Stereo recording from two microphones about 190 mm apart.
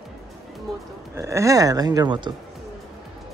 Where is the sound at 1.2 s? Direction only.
15° right (ahead or behind).